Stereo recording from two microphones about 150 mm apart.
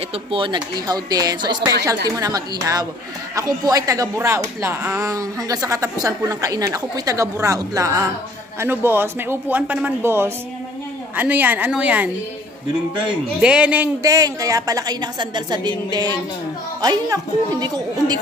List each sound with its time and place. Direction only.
0.1 s speech: 35° right (ahead or behind); by 12.1 s 10° right (ahead or behind)
13.4 s speech: 5° right (ahead or behind)
14.0 s speech: 25° right (ahead or behind)